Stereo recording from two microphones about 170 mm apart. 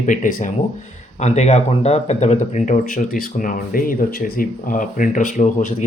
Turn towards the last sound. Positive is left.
turn(degrees=45)  # may be behind; listen again after turning